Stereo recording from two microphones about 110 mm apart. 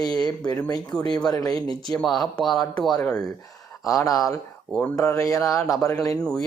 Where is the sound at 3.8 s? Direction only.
30° left (ahead or behind).